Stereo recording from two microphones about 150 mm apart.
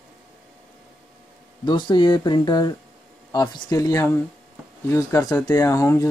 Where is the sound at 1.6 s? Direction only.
30° left (ahead or behind).